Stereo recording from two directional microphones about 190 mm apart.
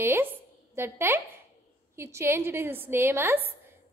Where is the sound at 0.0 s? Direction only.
10° right (ahead or behind).